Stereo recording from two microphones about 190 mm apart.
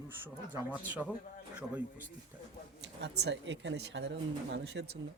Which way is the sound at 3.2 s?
70° right (ahead or behind).